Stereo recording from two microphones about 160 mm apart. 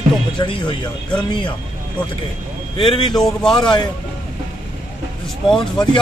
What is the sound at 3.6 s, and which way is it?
Speech, 25° left (ahead or behind).